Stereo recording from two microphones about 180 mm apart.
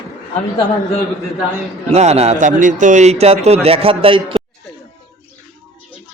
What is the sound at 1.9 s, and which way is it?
A man's voice, 35° right (ahead or behind).